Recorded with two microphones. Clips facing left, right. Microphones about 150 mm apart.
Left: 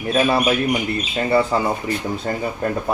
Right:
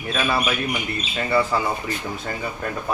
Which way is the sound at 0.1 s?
30° left (ahead or behind).